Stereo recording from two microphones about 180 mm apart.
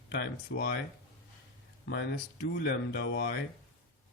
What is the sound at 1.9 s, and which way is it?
Speech, 70° left (ahead or behind).